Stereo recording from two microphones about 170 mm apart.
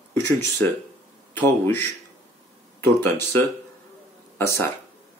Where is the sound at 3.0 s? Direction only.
15° left (ahead or behind).